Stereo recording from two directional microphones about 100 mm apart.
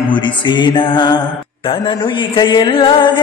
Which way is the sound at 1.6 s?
55° left (ahead or behind).